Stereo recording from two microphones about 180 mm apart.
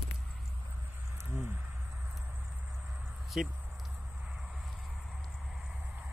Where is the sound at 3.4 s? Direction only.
5° right (ahead or behind).